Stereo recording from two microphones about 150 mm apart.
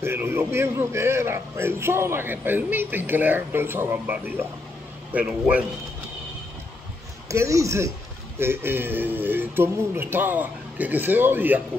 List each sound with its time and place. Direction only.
0.0 s a man's voice: 15° right (ahead or behind)
7.2 s a man's voice: 20° right (ahead or behind)